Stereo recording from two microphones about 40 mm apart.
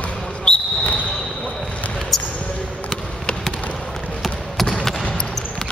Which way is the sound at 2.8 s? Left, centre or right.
Centre.